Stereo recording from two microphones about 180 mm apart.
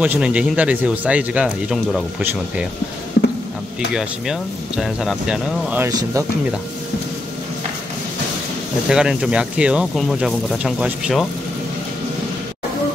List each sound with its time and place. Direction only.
0.0 s speech: 5° right (ahead or behind)
3.2 s a sound: 70° left (ahead or behind)
3.9 s speech: 5° right (ahead or behind)
5.9 s speech: 20° right (ahead or behind)
8.8 s speech: 5° right (ahead or behind)